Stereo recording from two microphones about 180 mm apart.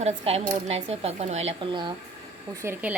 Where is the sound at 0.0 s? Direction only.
35° right (ahead or behind).